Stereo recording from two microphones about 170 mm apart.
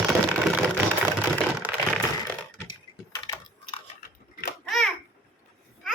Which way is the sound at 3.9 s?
55° left (ahead or behind).